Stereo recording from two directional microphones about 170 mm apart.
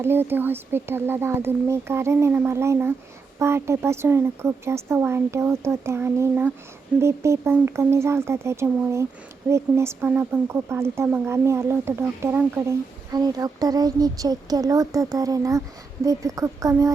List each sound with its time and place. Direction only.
0.0 s speech: 15° right (ahead or behind)
13.1 s speech: 20° right (ahead or behind)